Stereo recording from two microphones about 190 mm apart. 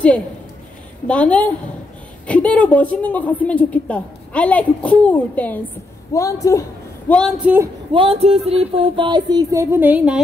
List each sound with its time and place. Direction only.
1.0 s a woman's voice: 5° left (ahead or behind)
7.1 s speech: 5° left (ahead or behind)
7.4 s speech: 10° right (ahead or behind)
7.9 s music: 30° right (ahead or behind); by 10.2 s 5° right (ahead or behind)